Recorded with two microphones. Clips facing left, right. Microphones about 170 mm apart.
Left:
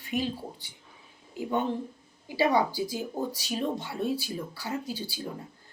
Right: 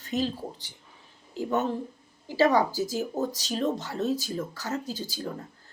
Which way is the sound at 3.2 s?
10° left (ahead or behind).